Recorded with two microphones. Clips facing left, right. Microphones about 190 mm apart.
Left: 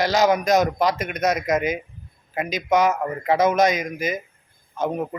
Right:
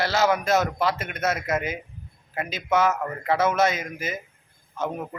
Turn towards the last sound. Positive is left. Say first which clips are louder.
# left 5 dB
turn(degrees=15)  # may be behind; listen again after turning